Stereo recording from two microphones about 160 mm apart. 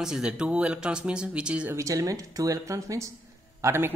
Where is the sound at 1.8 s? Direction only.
20° right (ahead or behind).